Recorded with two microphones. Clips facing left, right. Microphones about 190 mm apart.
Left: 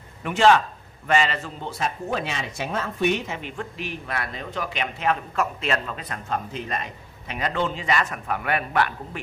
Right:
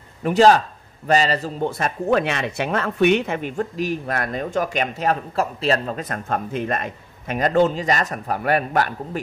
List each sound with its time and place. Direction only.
0.2 s a man's voice: 35° right (ahead or behind)
1.7 s speech: 55° right (ahead or behind); by 9.2 s 40° right (ahead or behind)